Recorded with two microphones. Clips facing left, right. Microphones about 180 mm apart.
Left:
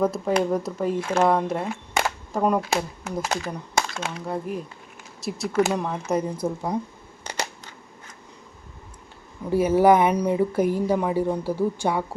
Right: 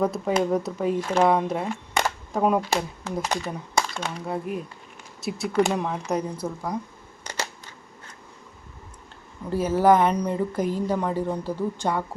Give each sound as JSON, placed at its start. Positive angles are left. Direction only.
{"t": 0.0, "sound": "speech", "side_deg": 0}
{"t": 6.4, "sound": "speech", "side_deg": 20}
{"t": 9.5, "sound": "speech", "side_deg": 10}